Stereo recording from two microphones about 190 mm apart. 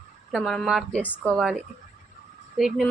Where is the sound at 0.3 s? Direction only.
Centre (ahead or behind).